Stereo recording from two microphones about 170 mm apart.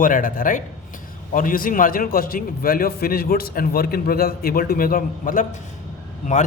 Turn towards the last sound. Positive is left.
turn(degrees=45)  # may be behind; listen again after turning